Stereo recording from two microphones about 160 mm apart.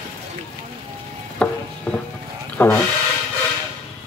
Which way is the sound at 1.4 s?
5° left (ahead or behind).